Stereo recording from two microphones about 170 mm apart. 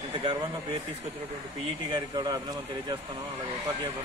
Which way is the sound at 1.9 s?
25° right (ahead or behind).